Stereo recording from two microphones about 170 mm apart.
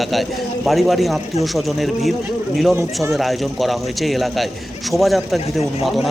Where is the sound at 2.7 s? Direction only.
15° right (ahead or behind).